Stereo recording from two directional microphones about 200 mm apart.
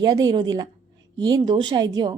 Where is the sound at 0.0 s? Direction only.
20° right (ahead or behind).